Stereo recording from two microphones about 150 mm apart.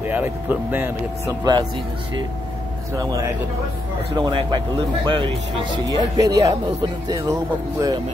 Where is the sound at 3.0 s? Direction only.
25° right (ahead or behind).